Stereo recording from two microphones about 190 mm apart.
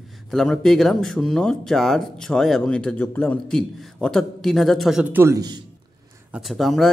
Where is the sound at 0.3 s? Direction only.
5° left (ahead or behind).